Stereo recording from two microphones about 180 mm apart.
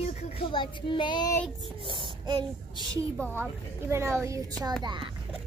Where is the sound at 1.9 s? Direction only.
25° right (ahead or behind).